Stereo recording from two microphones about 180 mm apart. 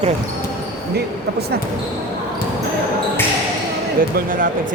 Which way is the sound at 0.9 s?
65° right (ahead or behind).